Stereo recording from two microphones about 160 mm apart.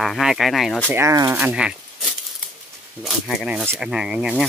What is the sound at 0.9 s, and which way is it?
Speech, 20° right (ahead or behind).